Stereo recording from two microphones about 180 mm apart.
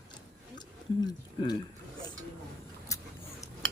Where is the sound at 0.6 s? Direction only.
25° left (ahead or behind).